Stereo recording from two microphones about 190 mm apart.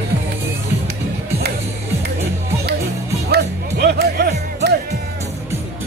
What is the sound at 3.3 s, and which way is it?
Music, 55° right (ahead or behind).